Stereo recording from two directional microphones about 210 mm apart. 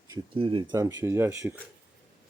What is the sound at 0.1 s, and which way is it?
Speech, 25° right (ahead or behind).